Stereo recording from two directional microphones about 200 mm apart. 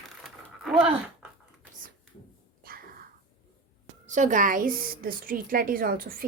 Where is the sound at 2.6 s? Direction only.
45° right (ahead or behind).